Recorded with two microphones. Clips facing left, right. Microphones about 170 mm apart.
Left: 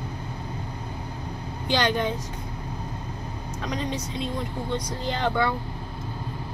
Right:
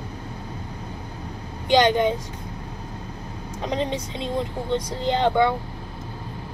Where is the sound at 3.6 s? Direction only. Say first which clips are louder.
Right 4 dB; 25° right (ahead or behind).